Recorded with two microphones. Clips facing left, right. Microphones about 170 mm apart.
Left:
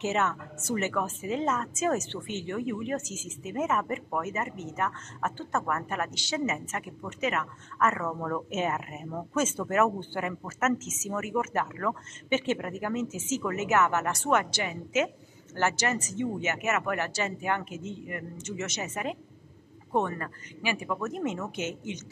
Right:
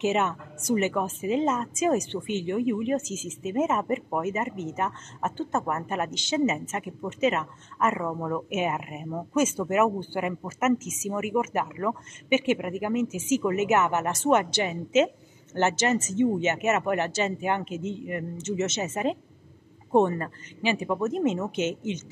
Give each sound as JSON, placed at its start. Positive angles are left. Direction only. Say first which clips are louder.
{"t": 0.0, "sound": "a woman's voice", "louder": "right 3 dB", "side_deg": -15}